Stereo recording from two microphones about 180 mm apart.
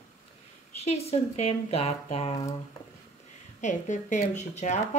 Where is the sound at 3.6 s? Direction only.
45° left (ahead or behind).